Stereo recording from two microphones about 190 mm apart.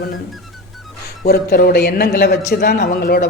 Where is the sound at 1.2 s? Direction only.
50° left (ahead or behind).